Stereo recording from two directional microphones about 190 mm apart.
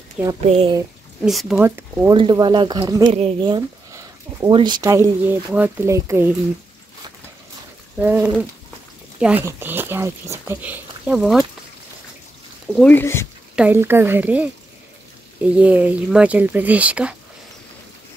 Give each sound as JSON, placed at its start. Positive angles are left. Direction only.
{"t": 0.5, "sound": "speech", "side_deg": -30}
{"t": 1.2, "sound": "speech", "side_deg": 0}
{"t": 2.1, "sound": "speech", "side_deg": -25}
{"t": 8.0, "sound": "speech", "side_deg": -10}
{"t": 12.7, "sound": "speech", "side_deg": 10}
{"t": 13.6, "sound": "speech", "side_deg": -10}